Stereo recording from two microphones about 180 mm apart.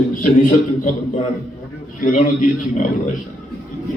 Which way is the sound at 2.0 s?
45° left (ahead or behind).